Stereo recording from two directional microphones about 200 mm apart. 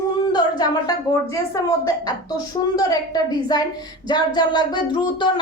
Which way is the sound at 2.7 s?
20° left (ahead or behind).